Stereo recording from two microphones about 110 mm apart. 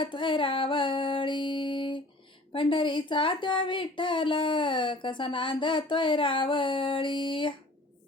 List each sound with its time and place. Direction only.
0.0 s music: 50° left (ahead or behind)
2.5 s speech: 50° left (ahead or behind)